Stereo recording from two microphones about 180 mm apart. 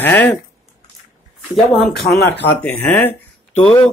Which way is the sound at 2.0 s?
60° left (ahead or behind).